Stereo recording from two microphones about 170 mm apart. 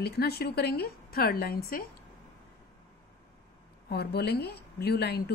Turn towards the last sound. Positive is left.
turn(degrees=70)  # may be behind; listen again after turning